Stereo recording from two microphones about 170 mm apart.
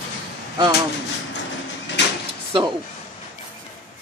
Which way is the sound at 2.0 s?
90° left.